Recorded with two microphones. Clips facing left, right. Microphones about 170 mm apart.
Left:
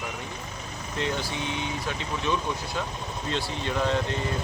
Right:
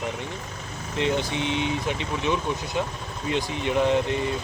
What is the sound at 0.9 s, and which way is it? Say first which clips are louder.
Speech: right 5 dB; 20° right (ahead or behind).